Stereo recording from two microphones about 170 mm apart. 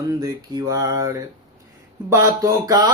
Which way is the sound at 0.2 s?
20° right (ahead or behind).